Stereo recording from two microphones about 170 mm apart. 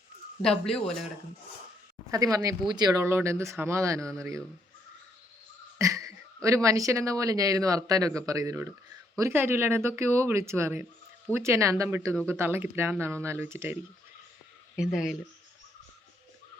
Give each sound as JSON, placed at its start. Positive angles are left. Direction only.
{"t": 0.6, "sound": "speech", "side_deg": 5}
{"t": 2.0, "sound": "speech", "side_deg": -20}
{"t": 5.8, "sound": "speech", "side_deg": -20}
{"t": 14.8, "sound": "speech", "side_deg": 0}